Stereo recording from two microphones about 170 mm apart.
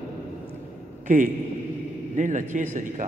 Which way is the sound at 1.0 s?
50° right (ahead or behind).